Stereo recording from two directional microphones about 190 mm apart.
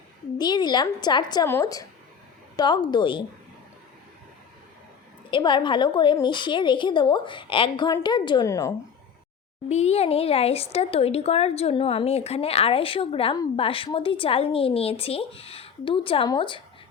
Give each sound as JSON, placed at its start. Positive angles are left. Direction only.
{"t": 0.3, "sound": "a woman's voice", "side_deg": 20}
{"t": 5.3, "sound": "a woman's voice", "side_deg": 25}
{"t": 9.6, "sound": "a woman's voice", "side_deg": 35}